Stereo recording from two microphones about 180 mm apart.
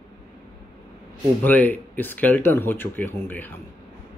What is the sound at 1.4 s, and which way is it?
Speech, 10° left (ahead or behind).